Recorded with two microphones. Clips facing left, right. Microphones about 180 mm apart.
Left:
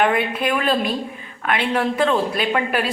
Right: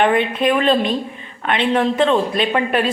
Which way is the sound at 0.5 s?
25° right (ahead or behind).